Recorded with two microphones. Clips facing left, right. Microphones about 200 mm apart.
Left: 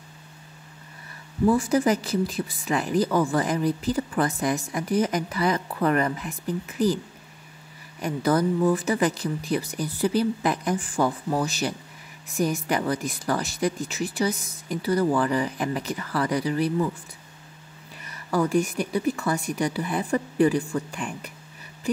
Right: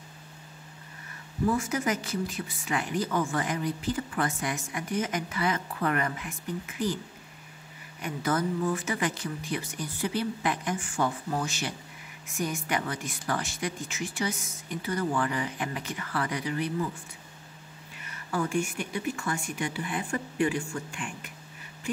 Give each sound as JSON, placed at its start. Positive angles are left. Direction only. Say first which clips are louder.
{"t": 1.6, "sound": "speech", "louder": "left 8 dB", "side_deg": 35}
{"t": 8.0, "sound": "speech", "louder": "left 6 dB", "side_deg": 35}
{"t": 18.0, "sound": "speech", "louder": "left 6 dB", "side_deg": 35}